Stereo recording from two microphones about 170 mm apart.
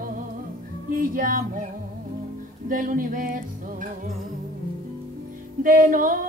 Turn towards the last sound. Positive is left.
turn(degrees=-55)  # may be behind; listen again after turning